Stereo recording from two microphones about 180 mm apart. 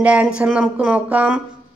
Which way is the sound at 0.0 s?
5° right (ahead or behind).